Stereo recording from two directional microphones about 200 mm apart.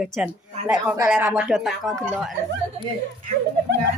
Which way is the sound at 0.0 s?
5° right (ahead or behind).